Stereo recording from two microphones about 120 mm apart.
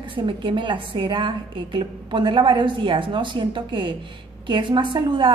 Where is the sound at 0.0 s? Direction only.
45° right (ahead or behind).